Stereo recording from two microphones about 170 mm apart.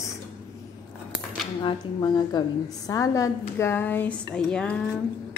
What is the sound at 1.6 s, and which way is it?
A woman's voice, 25° left (ahead or behind).